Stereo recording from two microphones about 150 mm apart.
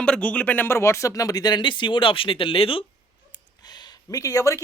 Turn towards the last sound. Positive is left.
turn(degrees=20)  # may be behind; listen again after turning